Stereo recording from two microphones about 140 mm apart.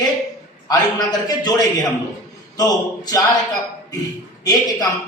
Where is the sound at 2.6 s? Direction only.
25° left (ahead or behind).